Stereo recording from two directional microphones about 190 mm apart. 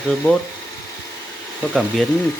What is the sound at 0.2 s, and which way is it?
Speech, 15° left (ahead or behind).